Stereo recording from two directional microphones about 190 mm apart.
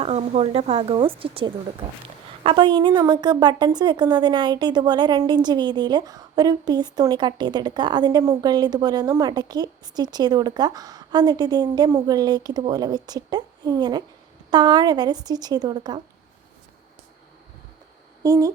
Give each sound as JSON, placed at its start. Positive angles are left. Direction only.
{"t": 0.0, "sound": "a woman's voice", "side_deg": -35}
{"t": 18.2, "sound": "speech", "side_deg": -15}